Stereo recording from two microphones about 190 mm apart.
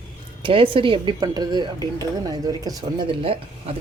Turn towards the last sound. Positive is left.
turn(degrees=-30)  # may be behind; listen again after turning